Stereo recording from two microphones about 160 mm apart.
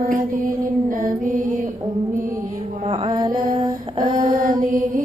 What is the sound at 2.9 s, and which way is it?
Music, 25° right (ahead or behind).